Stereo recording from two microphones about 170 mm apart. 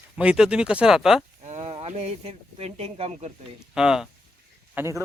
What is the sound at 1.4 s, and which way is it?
Speech, 40° right (ahead or behind).